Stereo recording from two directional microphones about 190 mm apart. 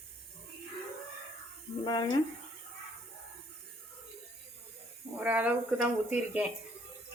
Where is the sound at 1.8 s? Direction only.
25° left (ahead or behind).